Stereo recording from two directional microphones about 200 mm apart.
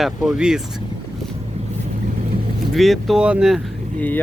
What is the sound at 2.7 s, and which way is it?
Speech, centre (ahead or behind).